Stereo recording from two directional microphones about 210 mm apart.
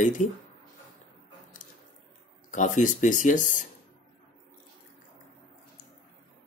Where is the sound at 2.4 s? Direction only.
35° left (ahead or behind).